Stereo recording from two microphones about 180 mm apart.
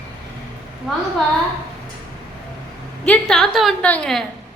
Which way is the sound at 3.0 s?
5° left (ahead or behind).